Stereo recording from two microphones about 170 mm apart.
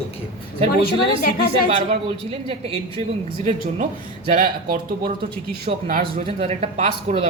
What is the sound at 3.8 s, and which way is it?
Speech, 45° right (ahead or behind).